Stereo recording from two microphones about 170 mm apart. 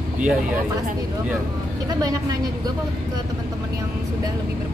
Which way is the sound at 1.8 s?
20° right (ahead or behind).